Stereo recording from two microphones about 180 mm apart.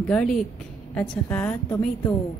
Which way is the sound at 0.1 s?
5° left (ahead or behind).